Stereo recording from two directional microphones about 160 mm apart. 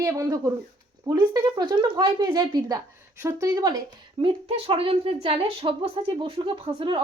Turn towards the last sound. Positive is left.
turn(degrees=-35)  # may be behind; listen again after turning